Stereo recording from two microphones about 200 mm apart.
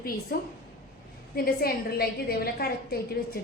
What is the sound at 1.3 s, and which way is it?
A woman's voice, 50° left (ahead or behind).